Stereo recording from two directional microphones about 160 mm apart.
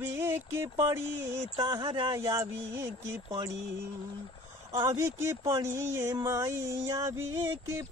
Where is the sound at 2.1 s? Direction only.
20° right (ahead or behind).